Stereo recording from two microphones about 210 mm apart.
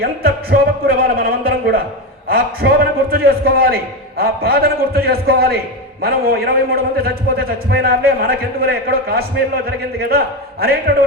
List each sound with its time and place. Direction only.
0.0 s a man's voice: 45° right (ahead or behind)